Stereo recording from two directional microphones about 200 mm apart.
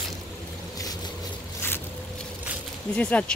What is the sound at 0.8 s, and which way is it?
Boat, 20° left (ahead or behind).